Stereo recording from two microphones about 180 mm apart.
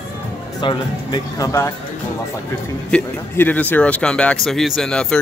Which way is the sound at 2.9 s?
10° left (ahead or behind).